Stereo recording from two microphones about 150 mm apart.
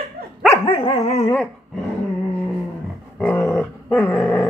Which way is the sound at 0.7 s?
40° left (ahead or behind).